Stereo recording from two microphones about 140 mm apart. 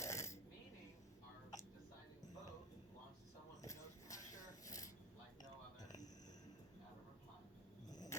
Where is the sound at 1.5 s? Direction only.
30° left (ahead or behind).